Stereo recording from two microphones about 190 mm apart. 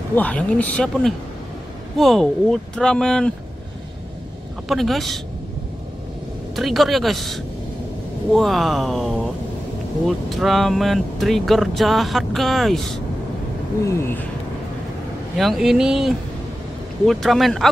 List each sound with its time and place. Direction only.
0.1 s speech: 5° left (ahead or behind)
4.6 s speech: centre (ahead or behind)
6.5 s speech: centre (ahead or behind)
13.8 s speech: 10° left (ahead or behind)
15.3 s speech: centre (ahead or behind)